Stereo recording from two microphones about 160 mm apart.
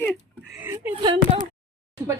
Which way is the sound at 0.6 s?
15° right (ahead or behind).